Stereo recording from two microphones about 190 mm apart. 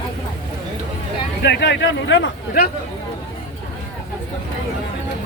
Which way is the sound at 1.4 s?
65° left (ahead or behind).